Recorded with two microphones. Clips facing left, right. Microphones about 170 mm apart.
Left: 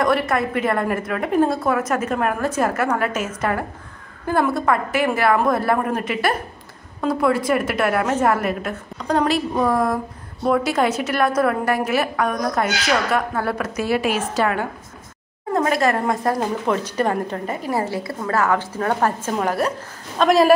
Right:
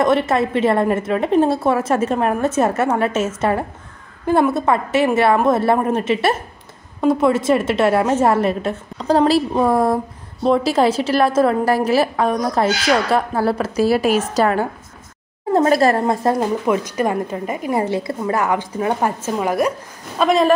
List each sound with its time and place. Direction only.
0.0 s a woman's voice: 25° right (ahead or behind)
16.3 s a woman's voice: 10° right (ahead or behind)
20.2 s a man's voice: centre (ahead or behind)